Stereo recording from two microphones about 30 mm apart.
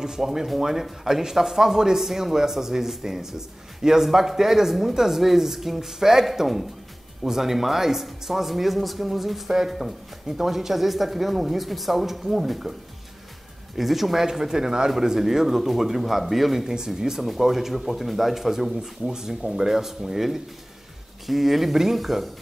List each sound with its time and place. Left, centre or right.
0.0 s speech: centre
13.7 s speech: centre
14.2 s speech: centre
15.2 s speech: centre
16.6 s speech: centre
17.2 s speech: centre